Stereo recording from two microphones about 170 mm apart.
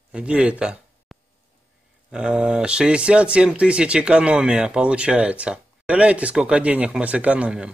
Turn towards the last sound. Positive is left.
turn(degrees=-5)  # may be behind; listen again after turning